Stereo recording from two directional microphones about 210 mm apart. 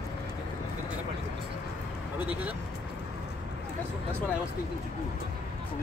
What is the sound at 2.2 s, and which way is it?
Vehicle, 5° right (ahead or behind).